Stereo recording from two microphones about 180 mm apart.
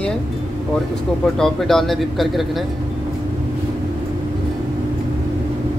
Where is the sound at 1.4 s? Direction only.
Centre (ahead or behind).